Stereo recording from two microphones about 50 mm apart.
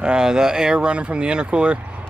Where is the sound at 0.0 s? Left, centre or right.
Centre.